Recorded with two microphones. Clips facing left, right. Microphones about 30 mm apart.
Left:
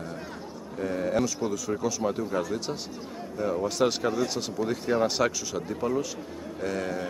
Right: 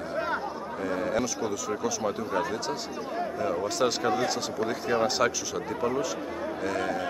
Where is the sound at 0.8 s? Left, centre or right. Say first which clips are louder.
Left 2 dB; centre.